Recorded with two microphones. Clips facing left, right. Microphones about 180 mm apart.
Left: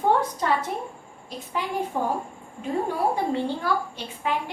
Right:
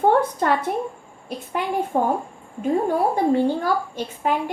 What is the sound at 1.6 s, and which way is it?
Speech, 55° right (ahead or behind).